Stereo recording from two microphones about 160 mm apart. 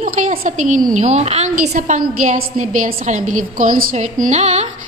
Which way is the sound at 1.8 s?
55° right (ahead or behind).